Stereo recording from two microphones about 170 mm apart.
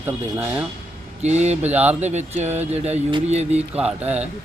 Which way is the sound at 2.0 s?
40° right (ahead or behind).